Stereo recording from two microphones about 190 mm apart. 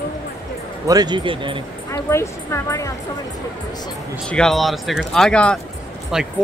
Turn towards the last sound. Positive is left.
turn(degrees=-5)  # may be behind; listen again after turning